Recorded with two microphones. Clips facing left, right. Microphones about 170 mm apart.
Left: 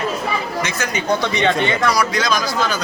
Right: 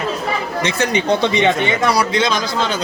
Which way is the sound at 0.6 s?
30° right (ahead or behind).